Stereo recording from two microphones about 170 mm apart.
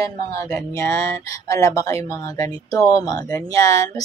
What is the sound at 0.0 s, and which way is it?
A woman's voice, 20° left (ahead or behind).